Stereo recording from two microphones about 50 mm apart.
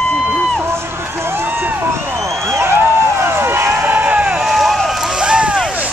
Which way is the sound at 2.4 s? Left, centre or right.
Right.